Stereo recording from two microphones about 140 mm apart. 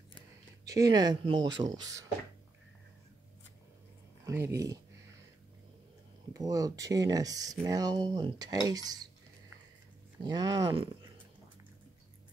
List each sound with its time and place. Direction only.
0.7 s speech: 25° right (ahead or behind)
4.2 s speech: 20° right (ahead or behind)
6.3 s speech: 25° right (ahead or behind)
10.2 s speech: 25° right (ahead or behind)